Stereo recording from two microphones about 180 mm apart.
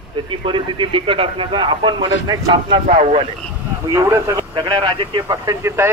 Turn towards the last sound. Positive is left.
turn(degrees=-15)  # may be behind; listen again after turning